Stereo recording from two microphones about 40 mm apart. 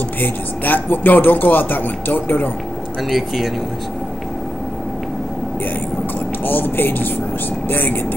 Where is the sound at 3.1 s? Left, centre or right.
Centre.